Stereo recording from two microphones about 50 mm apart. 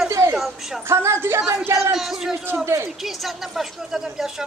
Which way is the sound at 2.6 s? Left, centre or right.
Right.